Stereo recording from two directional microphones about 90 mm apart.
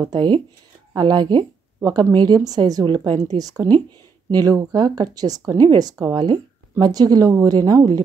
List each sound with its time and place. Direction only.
0.0 s speech: 55° right (ahead or behind)
1.8 s speech: 40° right (ahead or behind)
2.1 s speech: 50° right (ahead or behind)
6.1 s speech: 55° right (ahead or behind)